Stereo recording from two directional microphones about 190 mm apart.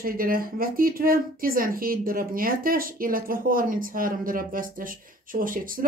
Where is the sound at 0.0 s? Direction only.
50° right (ahead or behind).